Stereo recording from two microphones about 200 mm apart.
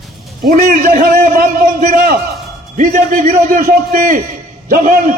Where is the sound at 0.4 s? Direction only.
45° right (ahead or behind).